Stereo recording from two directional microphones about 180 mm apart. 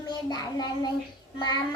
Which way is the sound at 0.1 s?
25° left (ahead or behind).